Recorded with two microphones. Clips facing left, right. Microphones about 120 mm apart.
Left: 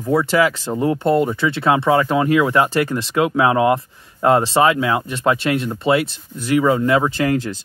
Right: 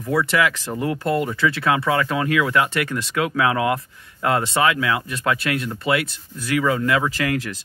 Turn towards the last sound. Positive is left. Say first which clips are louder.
# left 4 dB
turn(degrees=30)  # may be behind; listen again after turning